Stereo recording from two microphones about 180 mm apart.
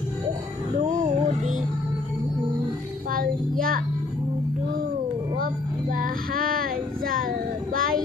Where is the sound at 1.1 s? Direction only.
40° right (ahead or behind).